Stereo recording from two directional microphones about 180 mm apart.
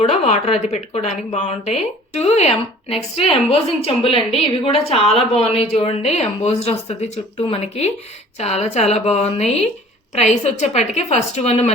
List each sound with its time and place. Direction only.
0.0 s a woman's voice: 35° left (ahead or behind)